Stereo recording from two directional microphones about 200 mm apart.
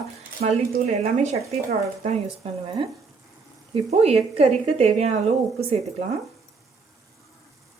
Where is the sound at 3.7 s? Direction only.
30° right (ahead or behind).